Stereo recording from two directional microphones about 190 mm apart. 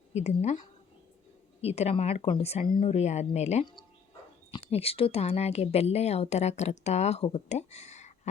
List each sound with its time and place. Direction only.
0.1 s speech: 35° left (ahead or behind)
1.6 s speech: 35° left (ahead or behind)